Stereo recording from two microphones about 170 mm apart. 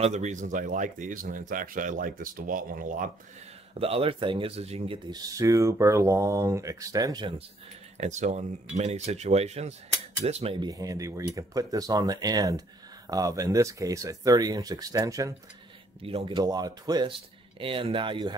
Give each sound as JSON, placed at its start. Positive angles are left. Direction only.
{"t": 0.0, "sound": "speech", "side_deg": -45}
{"t": 3.7, "sound": "speech", "side_deg": -35}
{"t": 8.0, "sound": "speech", "side_deg": -45}
{"t": 16.0, "sound": "speech", "side_deg": -35}